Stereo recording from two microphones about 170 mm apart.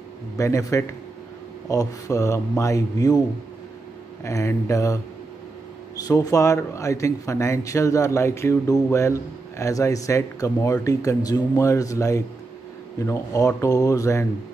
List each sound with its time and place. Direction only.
0.4 s a man's voice: 20° left (ahead or behind)
4.2 s a man's voice: 15° left (ahead or behind)